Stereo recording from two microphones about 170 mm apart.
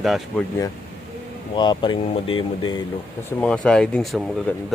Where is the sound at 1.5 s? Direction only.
30° left (ahead or behind).